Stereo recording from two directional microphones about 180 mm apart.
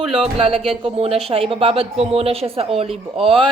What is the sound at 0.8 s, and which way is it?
Speech, 35° right (ahead or behind).